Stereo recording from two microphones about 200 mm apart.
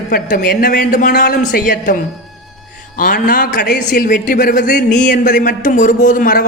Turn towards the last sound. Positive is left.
turn(degrees=45)  # may be behind; listen again after turning